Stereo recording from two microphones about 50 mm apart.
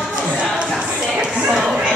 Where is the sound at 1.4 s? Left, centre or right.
Centre.